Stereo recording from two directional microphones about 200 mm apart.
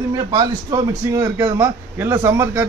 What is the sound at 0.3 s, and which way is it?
A man's voice, 20° right (ahead or behind).